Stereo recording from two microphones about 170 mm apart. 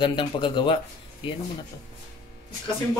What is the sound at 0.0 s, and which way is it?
Speech, 30° left (ahead or behind).